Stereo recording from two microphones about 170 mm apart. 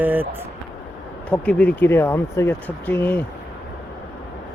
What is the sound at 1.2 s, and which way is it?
Speech, 10° left (ahead or behind).